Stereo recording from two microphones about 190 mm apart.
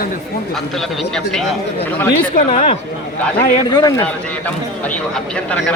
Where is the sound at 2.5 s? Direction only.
30° left (ahead or behind).